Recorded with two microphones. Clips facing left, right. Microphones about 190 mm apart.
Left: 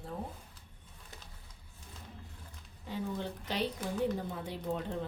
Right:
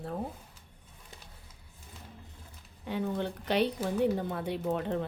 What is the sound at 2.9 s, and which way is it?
Speech, 65° right (ahead or behind).